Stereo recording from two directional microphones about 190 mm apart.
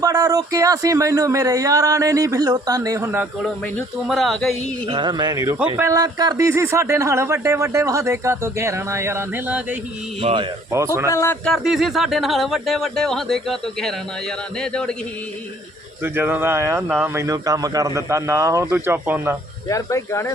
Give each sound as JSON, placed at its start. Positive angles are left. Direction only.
{"t": 0.0, "sound": "speech", "side_deg": -20}
{"t": 4.0, "sound": "speech", "side_deg": 0}
{"t": 4.9, "sound": "speech", "side_deg": -25}
{"t": 10.2, "sound": "speech", "side_deg": -30}
{"t": 10.7, "sound": "speech", "side_deg": -15}
{"t": 11.1, "sound": "speech", "side_deg": 15}
{"t": 11.4, "sound": "speech", "side_deg": 0}
{"t": 16.0, "sound": "speech", "side_deg": -10}
{"t": 19.6, "sound": "speech", "side_deg": 15}